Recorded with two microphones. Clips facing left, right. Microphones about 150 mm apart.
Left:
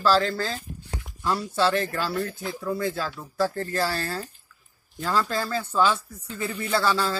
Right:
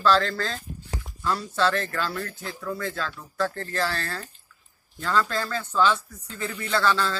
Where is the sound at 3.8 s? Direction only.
30° left (ahead or behind).